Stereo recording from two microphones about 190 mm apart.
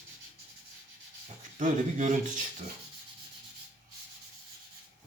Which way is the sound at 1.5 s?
40° right (ahead or behind).